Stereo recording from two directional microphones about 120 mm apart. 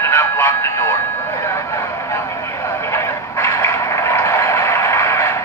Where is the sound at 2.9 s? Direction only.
25° left (ahead or behind).